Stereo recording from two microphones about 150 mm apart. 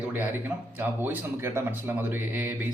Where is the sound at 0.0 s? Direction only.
10° right (ahead or behind).